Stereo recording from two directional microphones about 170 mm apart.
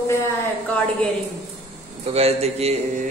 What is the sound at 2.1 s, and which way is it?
Speech, 35° right (ahead or behind).